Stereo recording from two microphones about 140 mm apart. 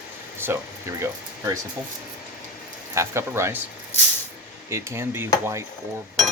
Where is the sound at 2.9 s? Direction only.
20° right (ahead or behind).